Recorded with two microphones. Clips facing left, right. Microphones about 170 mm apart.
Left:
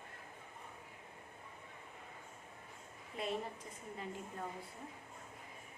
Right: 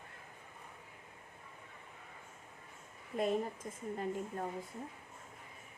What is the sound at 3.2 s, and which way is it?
A woman's voice, 45° right (ahead or behind).